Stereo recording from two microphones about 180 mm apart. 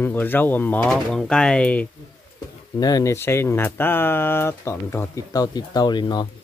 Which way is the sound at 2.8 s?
20° left (ahead or behind).